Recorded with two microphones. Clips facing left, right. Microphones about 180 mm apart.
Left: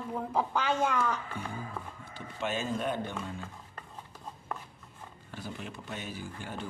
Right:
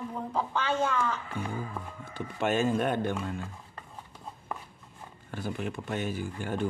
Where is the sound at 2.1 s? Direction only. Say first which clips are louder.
Right 7 dB; 55° right (ahead or behind).